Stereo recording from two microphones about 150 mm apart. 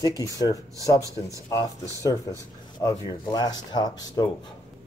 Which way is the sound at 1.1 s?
20° right (ahead or behind).